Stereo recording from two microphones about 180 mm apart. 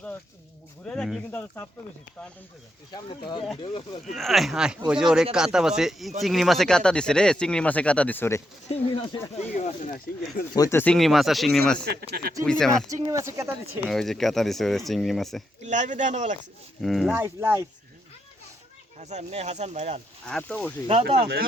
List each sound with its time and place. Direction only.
0.9 s speech: centre (ahead or behind)
3.6 s speech: 30° left (ahead or behind)
4.1 s speech: centre (ahead or behind)
8.7 s speech: 35° left (ahead or behind)
10.5 s speech: 20° left (ahead or behind); by 11.9 s centre (ahead or behind)
11.9 s speech: 60° right (ahead or behind)
12.5 s speech: 5° left (ahead or behind)
12.9 s speech: 20° right (ahead or behind)
13.9 s speech: centre (ahead or behind)
15.6 s speech: 40° right (ahead or behind)
16.8 s speech: centre (ahead or behind)
17.2 s speech: 15° right (ahead or behind)
18.9 s speech: 40° right (ahead or behind)
20.2 s speech: 5° left (ahead or behind)